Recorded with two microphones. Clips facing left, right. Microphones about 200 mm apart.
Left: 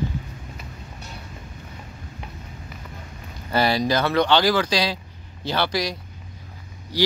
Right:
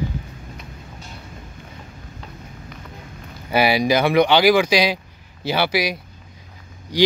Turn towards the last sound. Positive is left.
turn(degrees=-15)  # may be behind; listen again after turning